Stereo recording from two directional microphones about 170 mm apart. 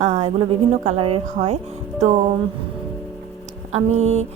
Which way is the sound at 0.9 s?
35° right (ahead or behind).